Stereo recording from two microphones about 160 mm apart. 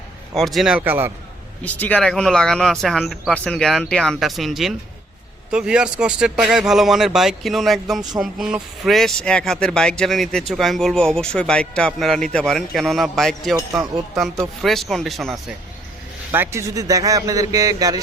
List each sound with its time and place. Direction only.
0.3 s speech: centre (ahead or behind)
1.6 s speech: 10° left (ahead or behind)
16.3 s speech: 15° right (ahead or behind)